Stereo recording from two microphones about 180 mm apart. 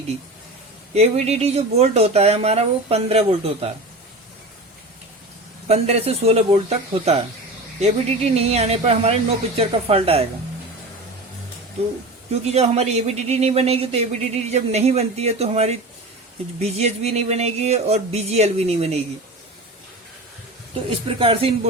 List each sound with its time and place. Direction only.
0.9 s speech: 35° right (ahead or behind)
5.6 s speech: 35° right (ahead or behind)
12.3 s speech: 35° right (ahead or behind)
21.2 s speech: 30° right (ahead or behind)